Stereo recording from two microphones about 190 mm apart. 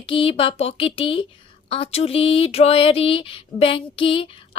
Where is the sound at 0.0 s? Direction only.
30° left (ahead or behind).